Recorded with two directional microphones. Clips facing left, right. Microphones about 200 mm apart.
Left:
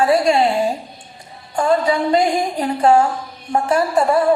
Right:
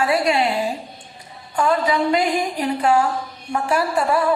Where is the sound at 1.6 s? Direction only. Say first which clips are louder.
Left 2 dB; 40° left (ahead or behind).